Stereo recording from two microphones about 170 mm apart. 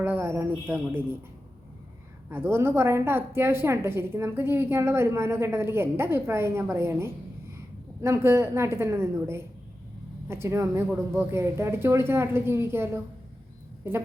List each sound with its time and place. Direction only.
0.0 s a woman's voice: 10° right (ahead or behind)
2.3 s a woman's voice: 15° right (ahead or behind)